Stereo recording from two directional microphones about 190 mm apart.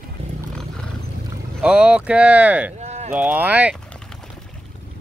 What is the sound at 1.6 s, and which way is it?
Speech, 5° right (ahead or behind).